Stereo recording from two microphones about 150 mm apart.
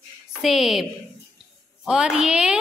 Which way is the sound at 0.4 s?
Centre (ahead or behind).